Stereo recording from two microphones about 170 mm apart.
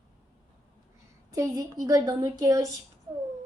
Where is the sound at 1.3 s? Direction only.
20° right (ahead or behind).